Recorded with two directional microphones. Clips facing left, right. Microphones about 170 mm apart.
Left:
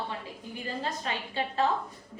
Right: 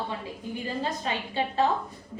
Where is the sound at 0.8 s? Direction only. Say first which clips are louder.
Right 2 dB; 25° right (ahead or behind).